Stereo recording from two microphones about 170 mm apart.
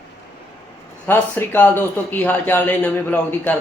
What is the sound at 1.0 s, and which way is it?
A man's voice, 10° left (ahead or behind).